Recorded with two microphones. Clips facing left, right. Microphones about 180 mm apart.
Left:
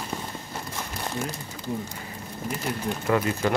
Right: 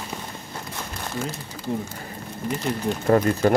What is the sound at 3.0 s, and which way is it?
Speech, 40° right (ahead or behind).